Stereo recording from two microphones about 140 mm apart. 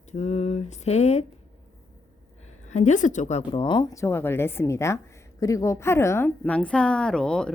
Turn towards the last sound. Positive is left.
turn(degrees=5)  # may be behind; listen again after turning